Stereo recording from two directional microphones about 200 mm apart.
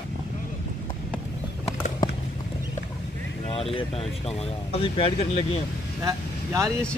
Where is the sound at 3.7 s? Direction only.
30° left (ahead or behind).